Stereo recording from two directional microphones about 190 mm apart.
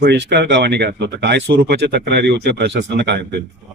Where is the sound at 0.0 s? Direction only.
60° right (ahead or behind).